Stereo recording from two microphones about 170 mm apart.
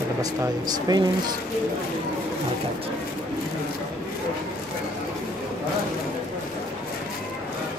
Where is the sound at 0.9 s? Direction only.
25° right (ahead or behind).